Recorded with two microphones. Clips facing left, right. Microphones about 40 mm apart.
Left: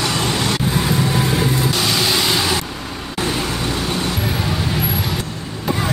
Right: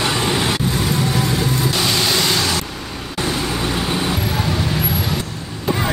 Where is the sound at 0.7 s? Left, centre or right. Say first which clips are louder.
Left 1 dB; centre.